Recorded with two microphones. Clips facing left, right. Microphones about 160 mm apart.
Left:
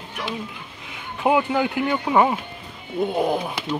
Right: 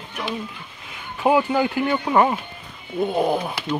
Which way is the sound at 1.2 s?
15° left (ahead or behind).